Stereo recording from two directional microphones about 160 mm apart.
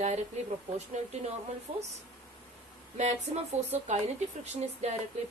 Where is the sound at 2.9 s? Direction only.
45° right (ahead or behind).